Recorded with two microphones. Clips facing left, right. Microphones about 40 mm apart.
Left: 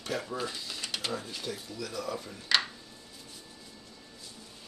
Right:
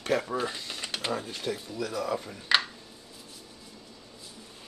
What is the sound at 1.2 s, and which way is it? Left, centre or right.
Speech, right.